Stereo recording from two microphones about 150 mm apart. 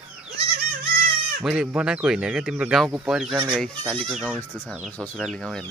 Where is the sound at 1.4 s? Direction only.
5° right (ahead or behind).